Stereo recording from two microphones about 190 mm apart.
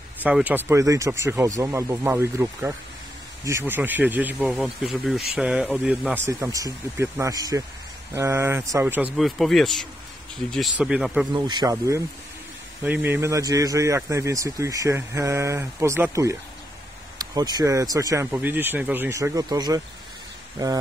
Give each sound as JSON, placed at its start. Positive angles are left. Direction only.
{"t": 0.2, "sound": "a man's voice", "side_deg": -10}
{"t": 11.3, "sound": "a man's voice", "side_deg": -25}